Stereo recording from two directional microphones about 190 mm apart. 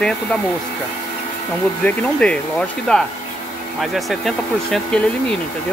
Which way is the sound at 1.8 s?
5° left (ahead or behind).